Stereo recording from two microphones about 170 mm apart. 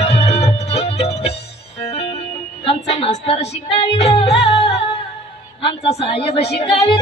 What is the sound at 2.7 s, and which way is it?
Speech, 35° left (ahead or behind).